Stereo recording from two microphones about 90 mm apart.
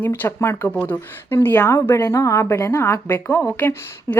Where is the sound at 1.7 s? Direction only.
35° left (ahead or behind).